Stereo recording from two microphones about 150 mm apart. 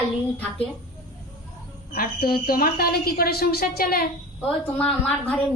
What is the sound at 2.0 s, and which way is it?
A woman's voice, 85° left.